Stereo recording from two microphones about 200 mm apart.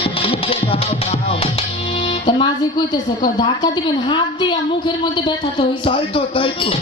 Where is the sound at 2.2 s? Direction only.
20° left (ahead or behind).